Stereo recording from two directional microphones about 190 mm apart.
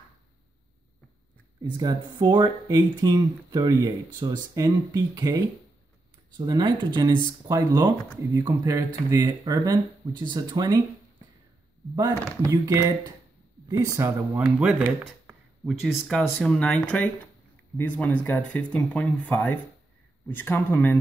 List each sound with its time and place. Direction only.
1.6 s speech: 20° right (ahead or behind)
11.9 s speech: 20° right (ahead or behind); by 21.0 s 10° left (ahead or behind)